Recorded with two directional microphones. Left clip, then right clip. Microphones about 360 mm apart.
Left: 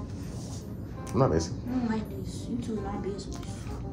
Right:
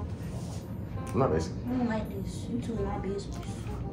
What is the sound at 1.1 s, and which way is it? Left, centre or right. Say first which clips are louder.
Speech: left 2 dB; left.